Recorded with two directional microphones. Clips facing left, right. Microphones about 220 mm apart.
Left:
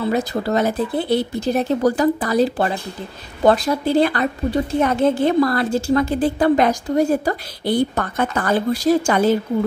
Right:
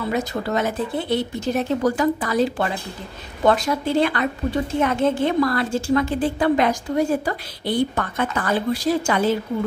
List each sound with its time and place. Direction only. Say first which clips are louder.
0.0 s a woman's voice: left 3 dB; 35° left (ahead or behind)